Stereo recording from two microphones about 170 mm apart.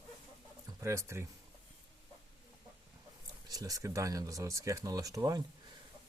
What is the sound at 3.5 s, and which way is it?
Speech, 20° right (ahead or behind).